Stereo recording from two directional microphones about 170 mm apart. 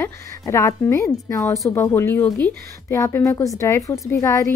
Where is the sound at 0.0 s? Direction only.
15° left (ahead or behind).